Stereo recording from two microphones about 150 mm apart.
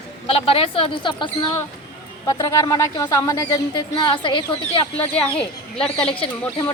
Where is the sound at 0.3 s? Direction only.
40° left (ahead or behind).